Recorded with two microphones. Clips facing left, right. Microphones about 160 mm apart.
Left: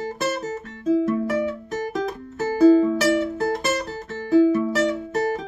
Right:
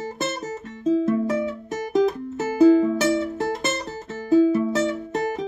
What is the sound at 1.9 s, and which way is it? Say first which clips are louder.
Music: right 7 dB; 25° right (ahead or behind).